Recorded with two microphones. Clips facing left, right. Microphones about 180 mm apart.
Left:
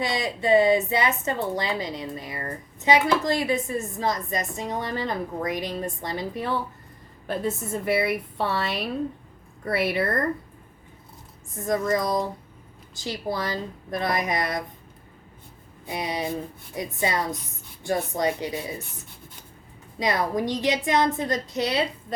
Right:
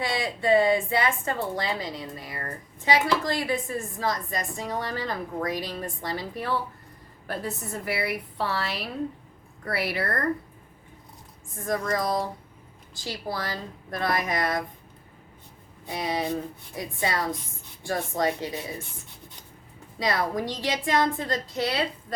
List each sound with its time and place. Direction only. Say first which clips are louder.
0.0 s a woman's voice: left 1 dB; 20° left (ahead or behind)
11.6 s a woman's voice: left 3 dB; 20° left (ahead or behind)
15.9 s a woman's voice: even; 20° left (ahead or behind)
20.0 s a woman's voice: left 2 dB; 20° left (ahead or behind)